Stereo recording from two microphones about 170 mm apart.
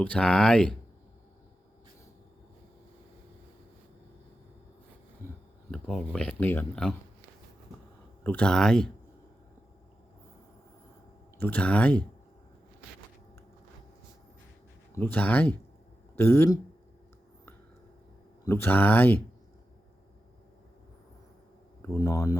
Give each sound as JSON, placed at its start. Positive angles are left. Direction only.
{"t": 0.0, "sound": "speech", "side_deg": 5}
{"t": 5.7, "sound": "speech", "side_deg": 0}
{"t": 8.2, "sound": "speech", "side_deg": 10}
{"t": 11.3, "sound": "speech", "side_deg": 10}
{"t": 14.9, "sound": "speech", "side_deg": 10}
{"t": 18.4, "sound": "speech", "side_deg": 15}
{"t": 21.8, "sound": "speech", "side_deg": 15}